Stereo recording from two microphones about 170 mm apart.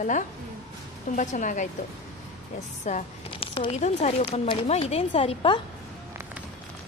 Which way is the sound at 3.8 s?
40° left (ahead or behind).